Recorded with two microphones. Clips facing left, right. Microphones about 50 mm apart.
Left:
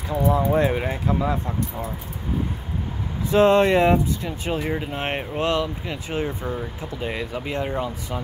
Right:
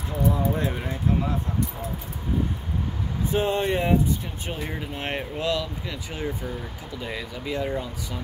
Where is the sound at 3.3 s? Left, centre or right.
Left.